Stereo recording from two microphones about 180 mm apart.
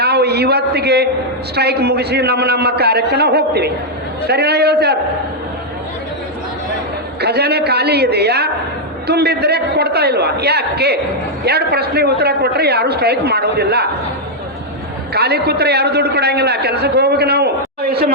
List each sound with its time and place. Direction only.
0.0 s a man's voice: 65° right (ahead or behind)
7.2 s a man's voice: 65° right (ahead or behind)
15.1 s a man's voice: 65° right (ahead or behind)